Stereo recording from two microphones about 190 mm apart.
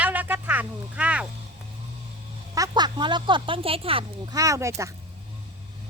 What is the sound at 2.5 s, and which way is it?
Speech, 20° right (ahead or behind).